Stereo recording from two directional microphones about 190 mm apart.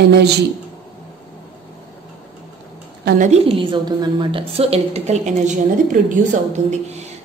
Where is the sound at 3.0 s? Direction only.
40° right (ahead or behind).